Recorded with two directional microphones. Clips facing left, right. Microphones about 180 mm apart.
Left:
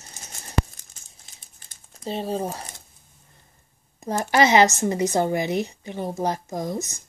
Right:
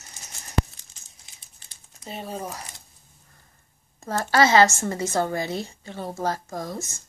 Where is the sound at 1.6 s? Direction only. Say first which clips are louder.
Left 2 dB; 50° left (ahead or behind).